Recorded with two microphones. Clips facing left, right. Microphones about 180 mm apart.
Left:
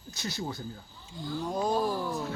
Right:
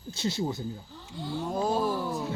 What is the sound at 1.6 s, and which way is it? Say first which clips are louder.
Speech: right 1 dB; 5° right (ahead or behind).